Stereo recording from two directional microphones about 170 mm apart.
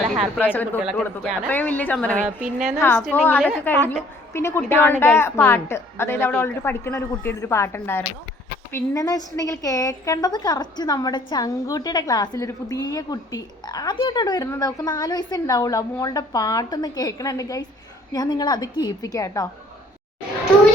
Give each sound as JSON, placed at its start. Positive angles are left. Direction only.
{"t": 0.2, "sound": "a woman's voice", "side_deg": 10}
{"t": 0.8, "sound": "a woman's voice", "side_deg": -5}
{"t": 2.2, "sound": "a woman's voice", "side_deg": -5}
{"t": 3.0, "sound": "a woman's voice", "side_deg": 10}